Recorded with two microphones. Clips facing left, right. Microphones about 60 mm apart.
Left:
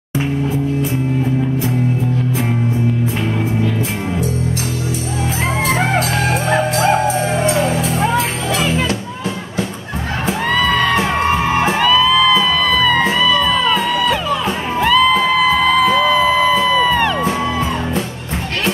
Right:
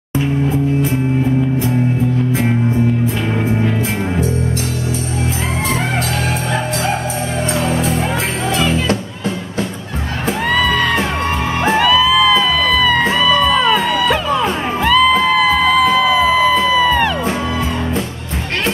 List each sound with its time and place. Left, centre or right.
7.4 s music: left
8.5 s music: centre
10.5 s music: centre
11.2 s music: left
11.7 s music: centre